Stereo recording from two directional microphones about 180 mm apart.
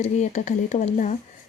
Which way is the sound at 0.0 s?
40° left (ahead or behind).